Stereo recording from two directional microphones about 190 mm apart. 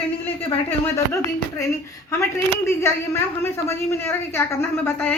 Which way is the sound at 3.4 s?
10° left (ahead or behind).